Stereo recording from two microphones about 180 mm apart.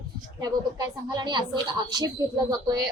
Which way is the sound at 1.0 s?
25° right (ahead or behind).